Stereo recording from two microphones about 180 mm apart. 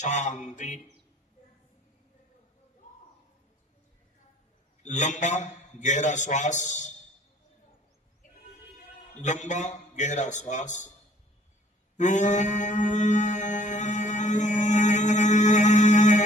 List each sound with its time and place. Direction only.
0.0 s a man's voice: 40° left (ahead or behind)
4.8 s a man's voice: 40° left (ahead or behind)
9.2 s a man's voice: 40° left (ahead or behind)
11.9 s chant: 40° left (ahead or behind)